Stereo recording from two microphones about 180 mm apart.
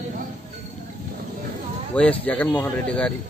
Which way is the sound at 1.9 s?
5° left (ahead or behind).